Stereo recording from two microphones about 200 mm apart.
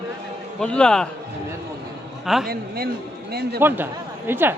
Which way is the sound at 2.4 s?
50° right (ahead or behind).